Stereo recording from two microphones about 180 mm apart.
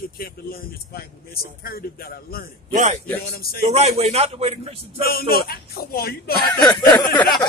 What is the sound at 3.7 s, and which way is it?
A man's voice, 35° right (ahead or behind).